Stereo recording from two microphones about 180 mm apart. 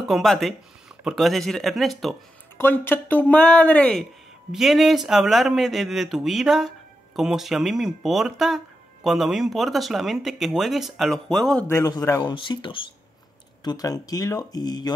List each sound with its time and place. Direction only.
0.1 s speech: centre (ahead or behind)
2.5 s speech: 10° left (ahead or behind)
11.6 s speech: 15° left (ahead or behind)